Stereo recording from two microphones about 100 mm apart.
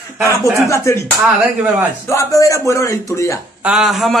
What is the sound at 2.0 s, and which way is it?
Speech, 35° left (ahead or behind).